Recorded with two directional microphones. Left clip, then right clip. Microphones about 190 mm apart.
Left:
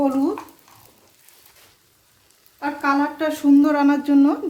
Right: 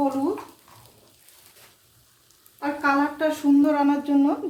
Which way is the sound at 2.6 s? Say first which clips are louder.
Left 2 dB; 35° left (ahead or behind).